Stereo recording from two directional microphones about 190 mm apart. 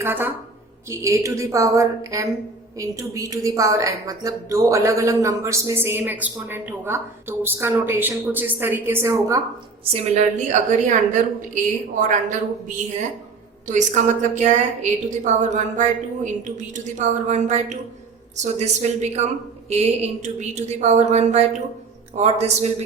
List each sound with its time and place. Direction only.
0.0 s a woman's voice: 10° right (ahead or behind)
9.9 s a woman's voice: 40° right (ahead or behind)